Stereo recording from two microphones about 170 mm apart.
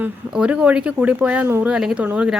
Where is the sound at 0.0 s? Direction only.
5° right (ahead or behind).